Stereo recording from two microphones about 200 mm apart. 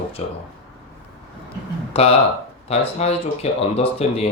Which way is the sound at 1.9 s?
30° left (ahead or behind).